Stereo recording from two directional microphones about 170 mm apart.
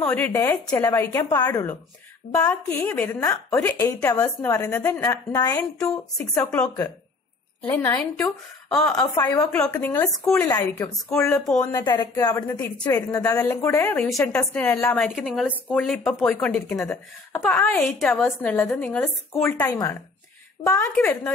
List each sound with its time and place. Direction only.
0.0 s a woman's voice: 10° left (ahead or behind)
3.2 s a woman's voice: 20° left (ahead or behind)
5.0 s a woman's voice: 20° left (ahead or behind)
6.3 s a woman's voice: 5° left (ahead or behind)
8.9 s a woman's voice: 20° left (ahead or behind)
9.5 s a woman's voice: 10° left (ahead or behind)
11.4 s speech: 5° left (ahead or behind)
11.7 s a woman's voice: 25° left (ahead or behind)
15.1 s a woman's voice: centre (ahead or behind)
17.9 s speech: centre (ahead or behind)
18.2 s a woman's voice: 10° left (ahead or behind)